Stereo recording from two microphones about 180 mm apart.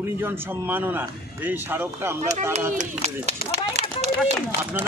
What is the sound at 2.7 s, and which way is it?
Speech, 40° right (ahead or behind).